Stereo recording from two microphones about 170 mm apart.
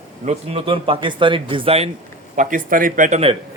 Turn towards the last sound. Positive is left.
turn(degrees=-45)  # may be behind; listen again after turning